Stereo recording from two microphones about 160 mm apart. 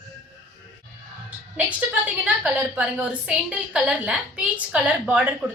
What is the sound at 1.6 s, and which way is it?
A woman's voice, 10° right (ahead or behind).